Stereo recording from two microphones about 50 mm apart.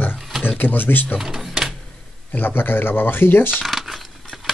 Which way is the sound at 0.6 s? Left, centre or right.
Left.